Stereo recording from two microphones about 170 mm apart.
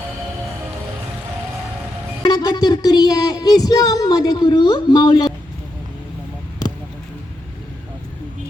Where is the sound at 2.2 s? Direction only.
25° left (ahead or behind).